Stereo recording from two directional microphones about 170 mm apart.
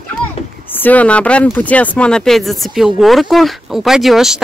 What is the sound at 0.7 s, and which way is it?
Speech, 10° left (ahead or behind).